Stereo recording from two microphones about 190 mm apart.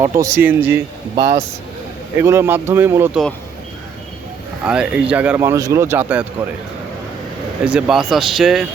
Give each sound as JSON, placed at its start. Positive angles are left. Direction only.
{"t": 0.0, "sound": "speech", "side_deg": -15}
{"t": 4.6, "sound": "speech", "side_deg": -5}
{"t": 7.6, "sound": "speech", "side_deg": -5}